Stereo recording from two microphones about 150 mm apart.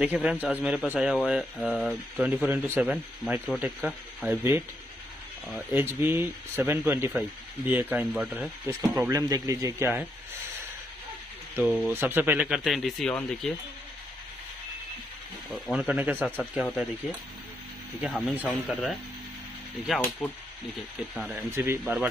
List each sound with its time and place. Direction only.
0.0 s speech: 5° right (ahead or behind)
2.1 s speech: 10° right (ahead or behind)
5.7 s speech: 15° right (ahead or behind)
8.6 s speech: 20° right (ahead or behind)
11.6 s speech: centre (ahead or behind)
11.9 s speech: 15° right (ahead or behind); by 13.5 s 5° left (ahead or behind)
15.6 s speech: 5° right (ahead or behind)
18.0 s speech: 5° right (ahead or behind)
21.3 s speech: 15° right (ahead or behind)